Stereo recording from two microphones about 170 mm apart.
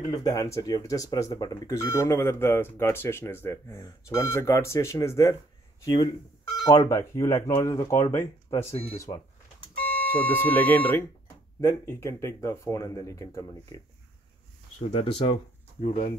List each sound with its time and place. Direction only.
0.1 s speech: 20° left (ahead or behind)
8.6 s speech: 40° left (ahead or behind)
9.8 s speech: 10° left (ahead or behind)
14.9 s speech: 35° left (ahead or behind)